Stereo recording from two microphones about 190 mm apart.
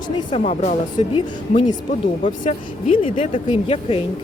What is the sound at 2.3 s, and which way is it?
Speech, 30° left (ahead or behind).